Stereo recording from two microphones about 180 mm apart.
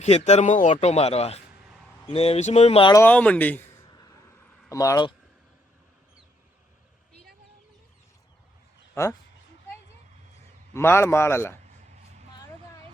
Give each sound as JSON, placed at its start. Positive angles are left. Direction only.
{"t": 0.0, "sound": "a man's voice", "side_deg": 40}
{"t": 2.9, "sound": "speech", "side_deg": 10}
{"t": 3.8, "sound": "a sound", "side_deg": 20}
{"t": 4.7, "sound": "speech", "side_deg": 20}
{"t": 9.0, "sound": "speech", "side_deg": 15}
{"t": 10.8, "sound": "speech", "side_deg": 15}